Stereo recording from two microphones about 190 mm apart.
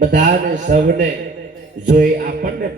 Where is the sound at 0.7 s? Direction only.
45° right (ahead or behind).